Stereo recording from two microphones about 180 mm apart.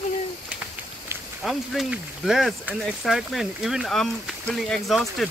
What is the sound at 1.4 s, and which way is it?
Speech, centre (ahead or behind).